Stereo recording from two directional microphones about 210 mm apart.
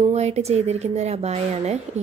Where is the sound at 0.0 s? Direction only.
30° right (ahead or behind).